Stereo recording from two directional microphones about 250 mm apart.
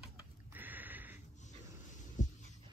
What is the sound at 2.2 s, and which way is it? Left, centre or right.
Writing, left.